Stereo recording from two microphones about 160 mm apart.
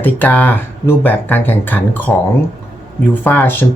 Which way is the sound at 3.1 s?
10° left (ahead or behind).